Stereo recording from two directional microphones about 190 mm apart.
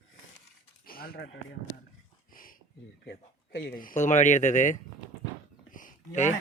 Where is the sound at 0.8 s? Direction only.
50° left (ahead or behind).